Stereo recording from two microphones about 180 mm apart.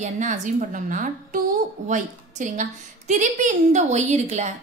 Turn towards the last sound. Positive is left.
turn(degrees=-40)  # may be behind; listen again after turning